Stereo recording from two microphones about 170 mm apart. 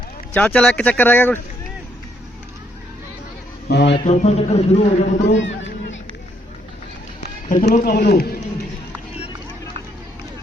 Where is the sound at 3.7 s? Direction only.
90° left.